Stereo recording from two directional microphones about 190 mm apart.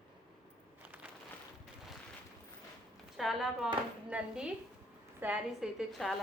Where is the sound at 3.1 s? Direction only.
Centre (ahead or behind).